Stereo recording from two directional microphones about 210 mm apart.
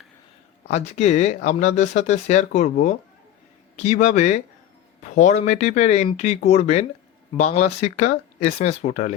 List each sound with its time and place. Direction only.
0.7 s speech: 35° left (ahead or behind)